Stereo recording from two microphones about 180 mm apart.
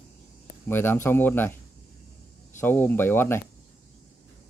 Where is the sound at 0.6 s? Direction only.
10° left (ahead or behind).